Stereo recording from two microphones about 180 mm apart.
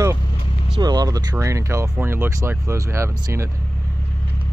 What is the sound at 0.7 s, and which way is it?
Speech, 20° right (ahead or behind).